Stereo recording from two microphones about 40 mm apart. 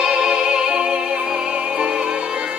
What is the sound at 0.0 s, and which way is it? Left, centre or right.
Music, centre.